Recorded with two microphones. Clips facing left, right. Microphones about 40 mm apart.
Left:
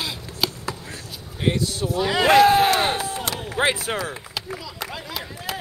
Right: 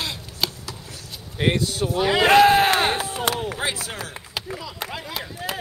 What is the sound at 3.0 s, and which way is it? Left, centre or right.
Chop, right.